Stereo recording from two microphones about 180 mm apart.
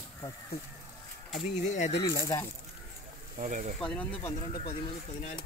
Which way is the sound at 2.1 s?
20° left (ahead or behind).